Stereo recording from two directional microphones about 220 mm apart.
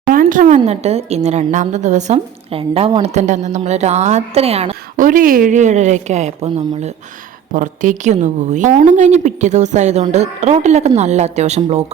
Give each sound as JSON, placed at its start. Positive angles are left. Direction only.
{"t": 0.1, "sound": "speech", "side_deg": -40}